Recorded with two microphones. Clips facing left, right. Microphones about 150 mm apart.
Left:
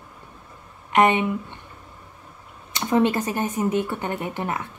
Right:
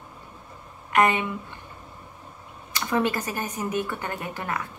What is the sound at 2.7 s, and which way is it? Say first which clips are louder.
Speech: left 5 dB; 25° left (ahead or behind).